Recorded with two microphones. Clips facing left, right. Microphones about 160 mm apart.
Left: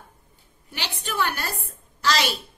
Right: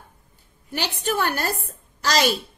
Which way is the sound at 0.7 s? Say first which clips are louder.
Right 7 dB; 45° right (ahead or behind).